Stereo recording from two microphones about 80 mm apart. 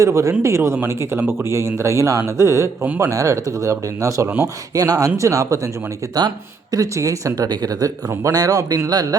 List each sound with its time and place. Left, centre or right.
0.0 s speech: right
6.1 s speech: right